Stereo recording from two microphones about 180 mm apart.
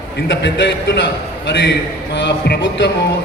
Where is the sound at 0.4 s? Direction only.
75° left (ahead or behind).